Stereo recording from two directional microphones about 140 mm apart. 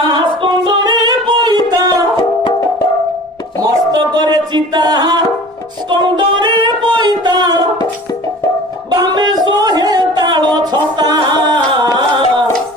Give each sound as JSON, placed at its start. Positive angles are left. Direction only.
{"t": 0.0, "sound": "music", "side_deg": -35}
{"t": 3.5, "sound": "music", "side_deg": -30}
{"t": 8.9, "sound": "a sound", "side_deg": -30}
{"t": 11.0, "sound": "music", "side_deg": -30}